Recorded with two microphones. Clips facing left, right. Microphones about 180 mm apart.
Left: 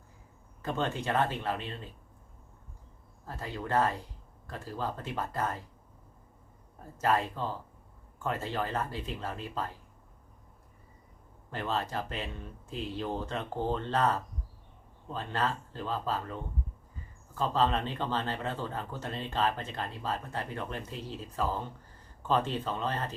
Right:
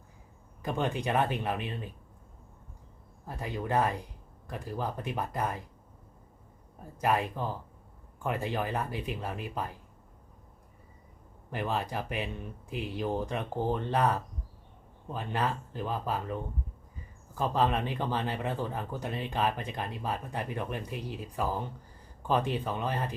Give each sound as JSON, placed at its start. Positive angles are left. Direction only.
{"t": 0.6, "sound": "speech", "side_deg": -15}
{"t": 3.2, "sound": "speech", "side_deg": -15}
{"t": 7.0, "sound": "speech", "side_deg": -15}
{"t": 11.5, "sound": "speech", "side_deg": -15}